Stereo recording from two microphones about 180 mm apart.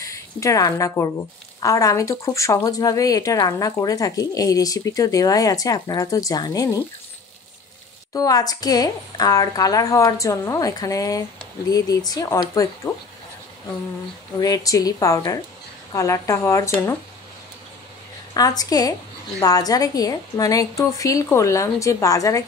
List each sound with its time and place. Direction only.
0.0 s a woman's voice: 15° left (ahead or behind)
8.1 s a woman's voice: 20° left (ahead or behind)
14.4 s a woman's voice: 20° left (ahead or behind)
18.3 s a woman's voice: 20° left (ahead or behind)